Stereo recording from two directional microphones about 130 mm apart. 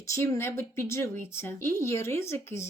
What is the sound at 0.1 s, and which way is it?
Speech, 20° left (ahead or behind).